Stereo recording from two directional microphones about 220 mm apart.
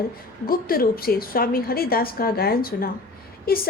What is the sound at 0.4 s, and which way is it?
A woman's voice, 40° left (ahead or behind).